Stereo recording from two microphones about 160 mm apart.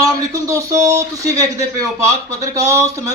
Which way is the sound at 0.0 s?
20° right (ahead or behind).